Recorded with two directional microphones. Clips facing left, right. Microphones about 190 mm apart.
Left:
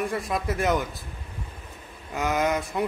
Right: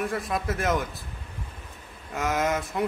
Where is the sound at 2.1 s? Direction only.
Centre (ahead or behind).